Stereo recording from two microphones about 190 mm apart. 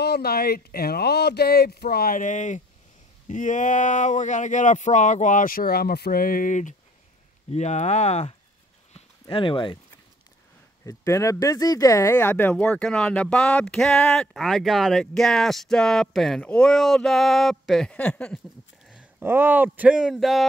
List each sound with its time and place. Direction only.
0.0 s speech: 55° left (ahead or behind); by 8.4 s 35° left (ahead or behind)
9.3 s speech: 25° left (ahead or behind)
10.9 s a man's voice: 15° left (ahead or behind); by 20.4 s centre (ahead or behind)